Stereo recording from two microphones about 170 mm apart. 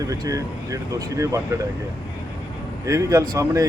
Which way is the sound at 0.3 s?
20° right (ahead or behind).